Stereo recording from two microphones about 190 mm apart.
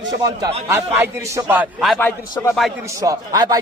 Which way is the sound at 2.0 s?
10° left (ahead or behind).